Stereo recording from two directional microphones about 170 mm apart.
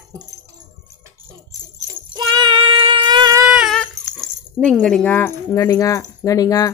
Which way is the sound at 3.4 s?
5° right (ahead or behind).